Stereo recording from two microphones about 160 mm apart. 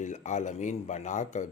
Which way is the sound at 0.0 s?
50° left (ahead or behind).